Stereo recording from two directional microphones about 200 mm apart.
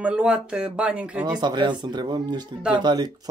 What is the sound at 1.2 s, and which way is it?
Speech, 20° right (ahead or behind).